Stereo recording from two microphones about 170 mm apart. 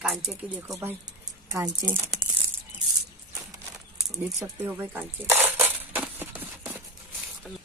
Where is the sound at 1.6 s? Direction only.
15° right (ahead or behind).